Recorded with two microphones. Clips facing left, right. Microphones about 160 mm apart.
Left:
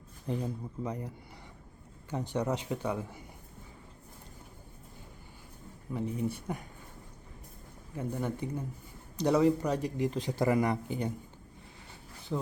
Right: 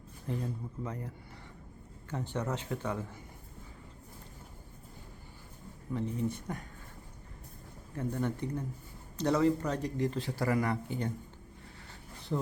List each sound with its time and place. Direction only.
0.3 s speech: 15° left (ahead or behind)
5.9 s speech: 10° left (ahead or behind)
7.9 s speech: 10° left (ahead or behind)
12.3 s speech: centre (ahead or behind)